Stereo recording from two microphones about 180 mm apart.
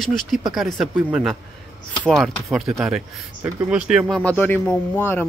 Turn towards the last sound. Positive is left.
turn(degrees=10)  # may be behind; listen again after turning